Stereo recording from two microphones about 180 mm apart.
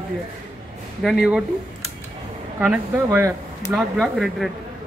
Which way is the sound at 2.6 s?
10° right (ahead or behind).